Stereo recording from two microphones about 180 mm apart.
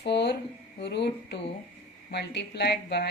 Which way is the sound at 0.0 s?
70° left (ahead or behind).